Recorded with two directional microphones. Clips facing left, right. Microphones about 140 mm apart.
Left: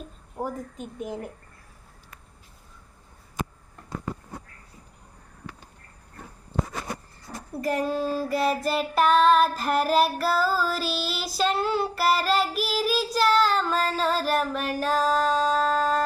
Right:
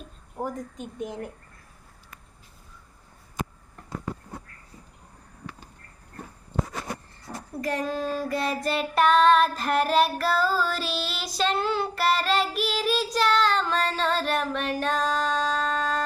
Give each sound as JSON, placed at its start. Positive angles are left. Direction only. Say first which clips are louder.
{"t": 0.3, "sound": "a woman's voice", "louder": "even", "side_deg": 5}
{"t": 7.3, "sound": "a sound", "louder": "right 1 dB", "side_deg": -25}
{"t": 7.6, "sound": "child singing", "louder": "left 2 dB", "side_deg": 5}